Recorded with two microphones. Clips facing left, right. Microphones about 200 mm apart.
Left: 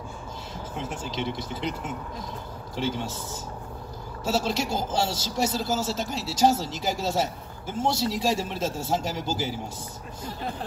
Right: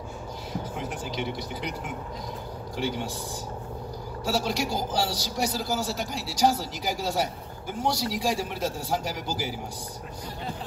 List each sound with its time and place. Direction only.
0.7 s speech: 25° left (ahead or behind)
4.2 s speech: 25° left (ahead or behind)